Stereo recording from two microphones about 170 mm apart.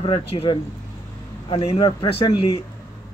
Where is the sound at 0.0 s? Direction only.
30° left (ahead or behind).